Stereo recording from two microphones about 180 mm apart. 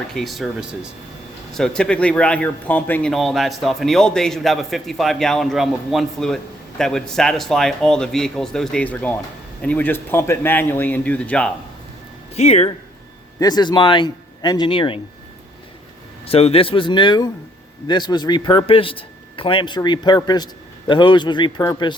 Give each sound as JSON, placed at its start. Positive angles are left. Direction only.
{"t": 0.1, "sound": "speech", "side_deg": 0}
{"t": 12.4, "sound": "speech", "side_deg": 35}
{"t": 13.4, "sound": "a man's voice", "side_deg": 25}
{"t": 16.2, "sound": "a man's voice", "side_deg": 35}